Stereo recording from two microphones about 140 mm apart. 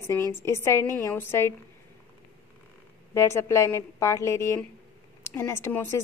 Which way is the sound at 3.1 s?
20° left (ahead or behind).